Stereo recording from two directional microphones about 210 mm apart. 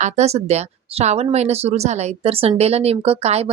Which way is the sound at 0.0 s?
30° right (ahead or behind).